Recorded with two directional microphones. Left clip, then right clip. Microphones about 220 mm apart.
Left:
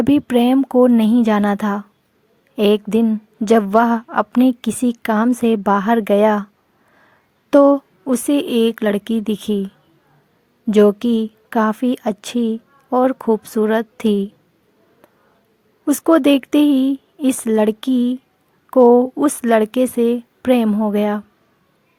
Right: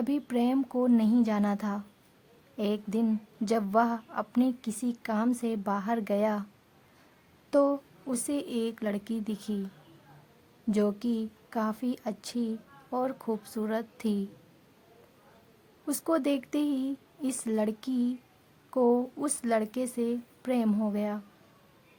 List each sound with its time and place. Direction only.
0.0 s a woman's voice: 35° left (ahead or behind)
7.5 s a woman's voice: 35° left (ahead or behind)
10.7 s a woman's voice: 35° left (ahead or behind)
15.9 s a woman's voice: 35° left (ahead or behind)